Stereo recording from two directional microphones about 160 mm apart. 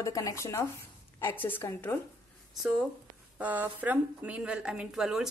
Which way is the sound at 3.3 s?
10° right (ahead or behind).